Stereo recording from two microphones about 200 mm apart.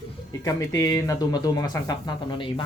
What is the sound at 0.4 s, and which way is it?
Speech, 15° left (ahead or behind).